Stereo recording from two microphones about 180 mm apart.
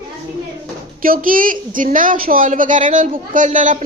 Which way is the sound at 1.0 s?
50° right (ahead or behind).